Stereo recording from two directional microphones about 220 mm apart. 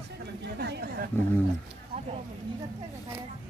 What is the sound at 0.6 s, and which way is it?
Chatter, 50° right (ahead or behind).